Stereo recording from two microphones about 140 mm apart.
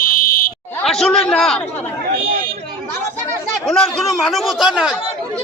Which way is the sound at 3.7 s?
Centre (ahead or behind).